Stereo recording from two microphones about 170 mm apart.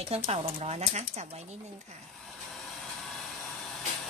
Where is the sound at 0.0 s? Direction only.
35° right (ahead or behind).